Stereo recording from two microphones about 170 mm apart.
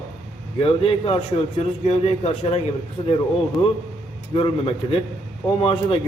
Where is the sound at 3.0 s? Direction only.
25° left (ahead or behind).